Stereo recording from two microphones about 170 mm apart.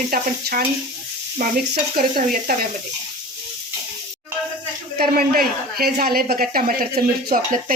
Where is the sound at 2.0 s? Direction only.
55° right (ahead or behind).